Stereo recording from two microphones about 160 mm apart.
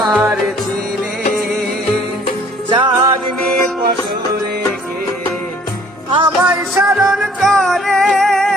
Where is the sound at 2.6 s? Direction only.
30° right (ahead or behind).